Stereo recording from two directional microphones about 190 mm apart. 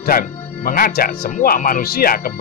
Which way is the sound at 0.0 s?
50° left (ahead or behind).